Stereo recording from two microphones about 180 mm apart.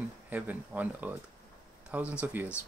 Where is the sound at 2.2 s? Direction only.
10° right (ahead or behind).